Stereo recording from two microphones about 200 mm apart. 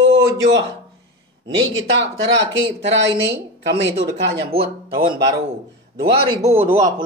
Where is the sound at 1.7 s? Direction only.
65° right (ahead or behind).